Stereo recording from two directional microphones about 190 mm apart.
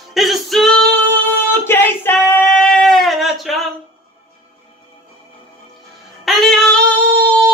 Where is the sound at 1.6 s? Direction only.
10° left (ahead or behind).